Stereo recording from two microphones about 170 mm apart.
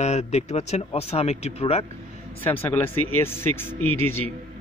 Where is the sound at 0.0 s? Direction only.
40° left (ahead or behind).